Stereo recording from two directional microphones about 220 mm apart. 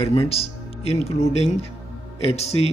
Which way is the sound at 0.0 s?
25° left (ahead or behind).